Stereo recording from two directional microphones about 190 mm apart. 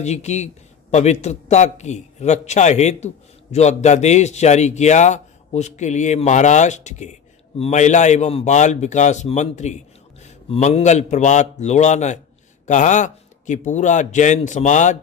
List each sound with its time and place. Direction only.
0.0 s a man's voice: 35° left (ahead or behind)